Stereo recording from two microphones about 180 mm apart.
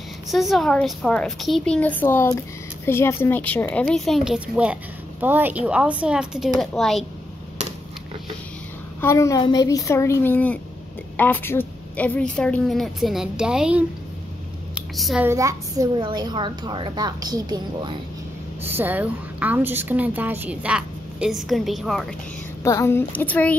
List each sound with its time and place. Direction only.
0.3 s a woman's voice: centre (ahead or behind)
9.0 s a woman's voice: 15° left (ahead or behind); by 13.8 s 5° right (ahead or behind)
15.0 s a woman's voice: centre (ahead or behind)
15.2 s a woman's voice: 20° right (ahead or behind)
18.6 s a woman's voice: 10° right (ahead or behind)
22.6 s speech: 15° left (ahead or behind)